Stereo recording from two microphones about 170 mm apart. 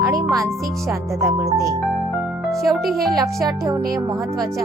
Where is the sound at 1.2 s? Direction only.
15° right (ahead or behind).